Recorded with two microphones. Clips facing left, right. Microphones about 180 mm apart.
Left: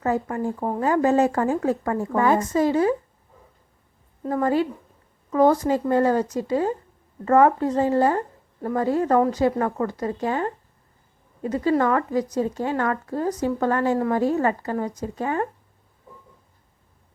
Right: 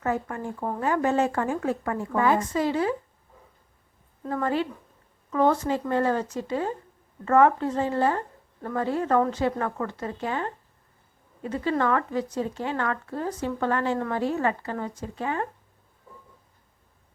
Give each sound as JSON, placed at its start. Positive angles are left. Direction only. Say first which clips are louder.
{"t": 0.0, "sound": "speech", "louder": "left 5 dB", "side_deg": 30}
{"t": 4.3, "sound": "speech", "louder": "left 5 dB", "side_deg": 35}